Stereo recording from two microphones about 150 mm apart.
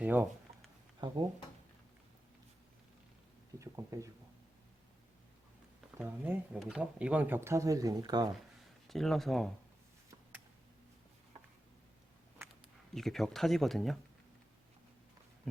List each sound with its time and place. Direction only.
0.0 s speech: 10° right (ahead or behind)
1.0 s speech: 30° right (ahead or behind)
3.6 s speech: 20° right (ahead or behind)
6.0 s speech: 10° right (ahead or behind); by 8.3 s 30° right (ahead or behind)
8.9 s speech: centre (ahead or behind)
12.9 s speech: centre (ahead or behind)